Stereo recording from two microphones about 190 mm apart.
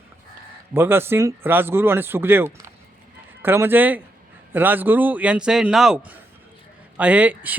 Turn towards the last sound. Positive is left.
turn(degrees=-10)  # may be behind; listen again after turning